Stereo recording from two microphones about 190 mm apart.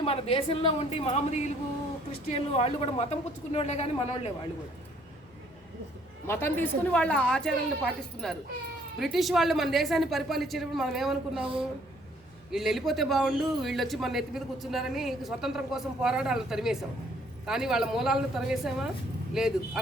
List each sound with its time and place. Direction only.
0.0 s a woman's voice: 30° left (ahead or behind)
6.2 s a man's voice: 10° left (ahead or behind)
12.5 s a man's voice: centre (ahead or behind)